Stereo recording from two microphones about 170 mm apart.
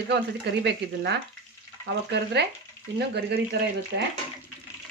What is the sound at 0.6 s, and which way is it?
Speech, 90° right.